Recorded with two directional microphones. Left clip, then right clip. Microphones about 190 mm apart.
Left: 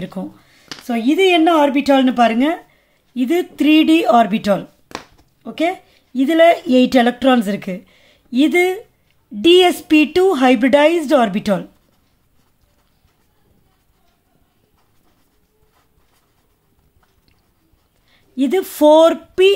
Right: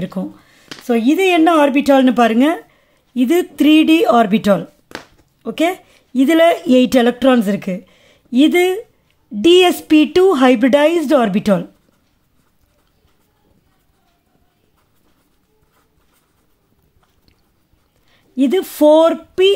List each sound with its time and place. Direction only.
0.0 s speech: 15° right (ahead or behind)
18.1 s a woman's voice: 15° right (ahead or behind)